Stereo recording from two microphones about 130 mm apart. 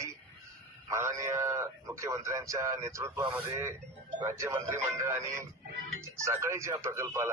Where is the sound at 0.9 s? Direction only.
20° right (ahead or behind).